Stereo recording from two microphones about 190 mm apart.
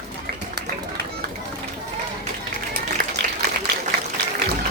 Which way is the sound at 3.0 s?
50° right (ahead or behind).